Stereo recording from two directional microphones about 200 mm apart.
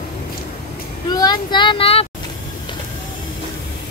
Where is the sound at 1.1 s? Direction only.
20° left (ahead or behind).